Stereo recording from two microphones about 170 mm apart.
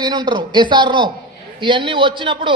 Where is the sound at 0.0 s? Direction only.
25° right (ahead or behind).